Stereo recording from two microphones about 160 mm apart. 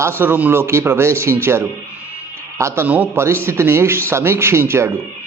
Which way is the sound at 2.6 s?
15° right (ahead or behind).